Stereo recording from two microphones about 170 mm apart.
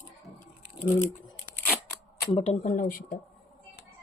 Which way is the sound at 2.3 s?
40° left (ahead or behind).